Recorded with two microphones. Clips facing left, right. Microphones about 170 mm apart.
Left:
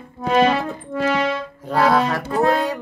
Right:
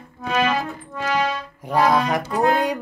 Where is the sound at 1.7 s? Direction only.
15° right (ahead or behind).